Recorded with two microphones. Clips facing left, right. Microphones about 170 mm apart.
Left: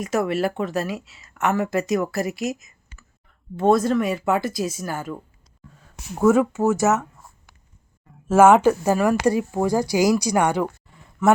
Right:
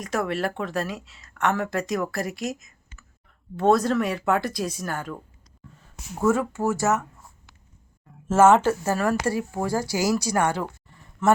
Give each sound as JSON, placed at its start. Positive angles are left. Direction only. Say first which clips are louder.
{"t": 0.0, "sound": "a woman's voice", "louder": "left 4 dB", "side_deg": 5}
{"t": 6.1, "sound": "speech", "louder": "left 5 dB", "side_deg": 20}
{"t": 8.3, "sound": "a man's voice", "louder": "left 3 dB", "side_deg": 15}